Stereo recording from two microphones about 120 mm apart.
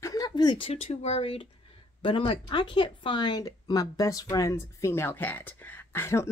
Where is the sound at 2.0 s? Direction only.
45° left (ahead or behind); by 6.2 s 20° left (ahead or behind).